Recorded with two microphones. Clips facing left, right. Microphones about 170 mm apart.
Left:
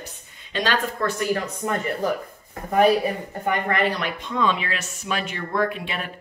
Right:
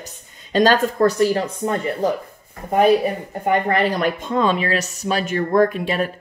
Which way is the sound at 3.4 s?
30° right (ahead or behind).